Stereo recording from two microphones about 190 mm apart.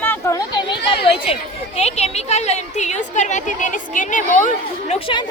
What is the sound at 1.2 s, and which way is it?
A woman's voice, 30° left (ahead or behind).